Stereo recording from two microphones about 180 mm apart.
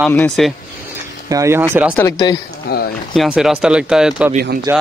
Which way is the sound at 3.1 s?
5° right (ahead or behind).